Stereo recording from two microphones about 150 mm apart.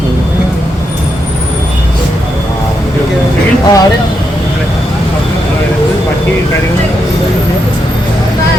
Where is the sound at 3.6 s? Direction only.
25° left (ahead or behind).